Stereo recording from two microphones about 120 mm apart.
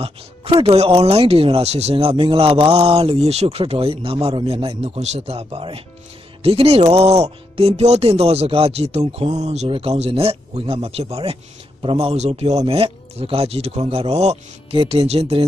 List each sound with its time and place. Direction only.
0.0 s speech: 50° right (ahead or behind)
4.9 s speech: 65° right (ahead or behind)
9.7 s speech: 55° right (ahead or behind)